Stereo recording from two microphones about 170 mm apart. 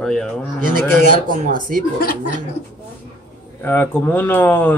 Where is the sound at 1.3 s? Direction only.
50° right (ahead or behind).